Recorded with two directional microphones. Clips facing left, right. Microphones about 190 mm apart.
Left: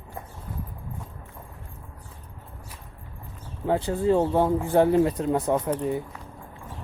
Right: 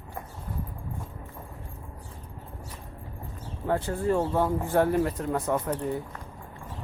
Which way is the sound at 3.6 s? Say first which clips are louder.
Left 4 dB; 20° left (ahead or behind).